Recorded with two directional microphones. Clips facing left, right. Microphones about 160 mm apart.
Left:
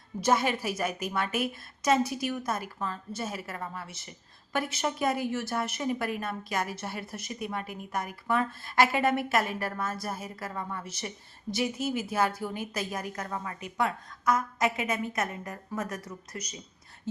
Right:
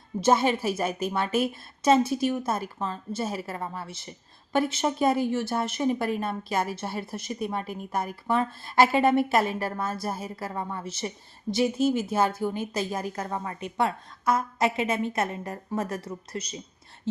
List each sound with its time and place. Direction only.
0.2 s a woman's voice: 25° right (ahead or behind)